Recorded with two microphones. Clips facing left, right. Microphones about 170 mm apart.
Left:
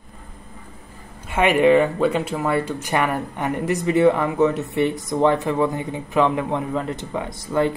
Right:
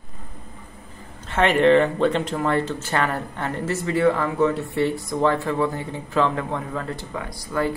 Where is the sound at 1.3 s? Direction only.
10° left (ahead or behind).